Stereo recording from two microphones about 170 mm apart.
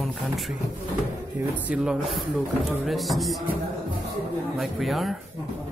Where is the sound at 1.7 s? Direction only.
5° right (ahead or behind).